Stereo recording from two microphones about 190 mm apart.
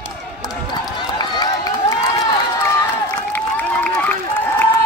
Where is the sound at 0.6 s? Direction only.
20° left (ahead or behind).